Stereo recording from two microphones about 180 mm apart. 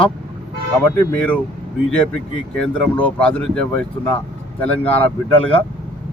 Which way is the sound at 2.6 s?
10° left (ahead or behind).